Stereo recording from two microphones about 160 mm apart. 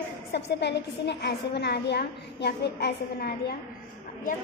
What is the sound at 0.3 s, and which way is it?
A woman's voice, 90° left.